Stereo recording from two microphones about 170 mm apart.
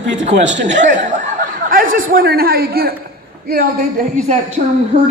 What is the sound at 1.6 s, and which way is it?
Speech, 55° right (ahead or behind).